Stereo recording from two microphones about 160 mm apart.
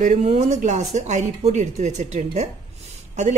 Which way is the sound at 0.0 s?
45° right (ahead or behind).